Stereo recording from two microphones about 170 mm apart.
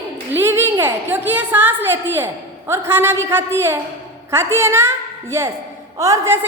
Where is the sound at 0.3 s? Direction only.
15° right (ahead or behind).